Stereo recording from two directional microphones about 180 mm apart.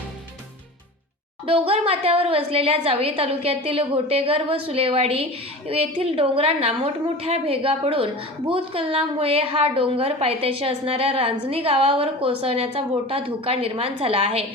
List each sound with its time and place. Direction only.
1.5 s a woman's voice: 30° right (ahead or behind)